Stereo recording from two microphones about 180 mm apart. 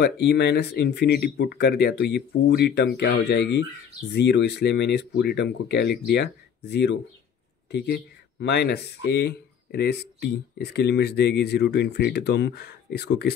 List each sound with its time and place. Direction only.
0.0 s speech: 70° left (ahead or behind)